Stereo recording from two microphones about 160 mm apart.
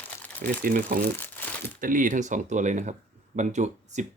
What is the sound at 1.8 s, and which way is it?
Speech, 55° right (ahead or behind).